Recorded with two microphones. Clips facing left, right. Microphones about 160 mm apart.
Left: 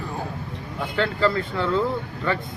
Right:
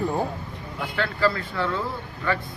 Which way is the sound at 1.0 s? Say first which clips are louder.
Left 2 dB; 25° left (ahead or behind).